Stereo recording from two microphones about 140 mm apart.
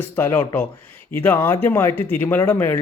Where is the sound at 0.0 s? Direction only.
15° left (ahead or behind).